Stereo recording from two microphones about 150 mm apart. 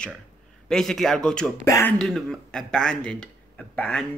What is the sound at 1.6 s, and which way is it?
Speech, 15° left (ahead or behind).